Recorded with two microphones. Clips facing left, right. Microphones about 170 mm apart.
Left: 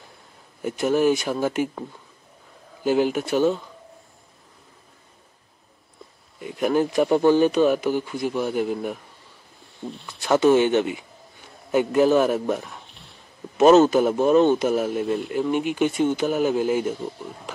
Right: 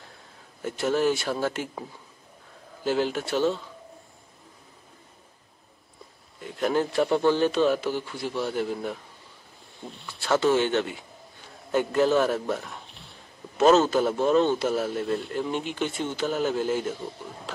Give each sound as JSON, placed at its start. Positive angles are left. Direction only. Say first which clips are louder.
{"t": 0.6, "sound": "a man's voice", "louder": "left 4 dB", "side_deg": 15}
{"t": 2.8, "sound": "a man's voice", "louder": "left 5 dB", "side_deg": 15}
{"t": 6.4, "sound": "a man's voice", "louder": "left 4 dB", "side_deg": 15}
{"t": 10.0, "sound": "a man's voice", "louder": "left 5 dB", "side_deg": 15}
{"t": 12.6, "sound": "a sound", "louder": "even", "side_deg": 0}
{"t": 13.6, "sound": "a man's voice", "louder": "left 5 dB", "side_deg": 15}